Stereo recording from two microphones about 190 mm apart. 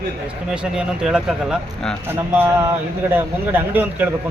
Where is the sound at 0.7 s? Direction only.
5° right (ahead or behind).